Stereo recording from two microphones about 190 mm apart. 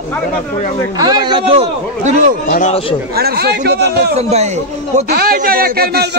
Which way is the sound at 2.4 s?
45° left (ahead or behind).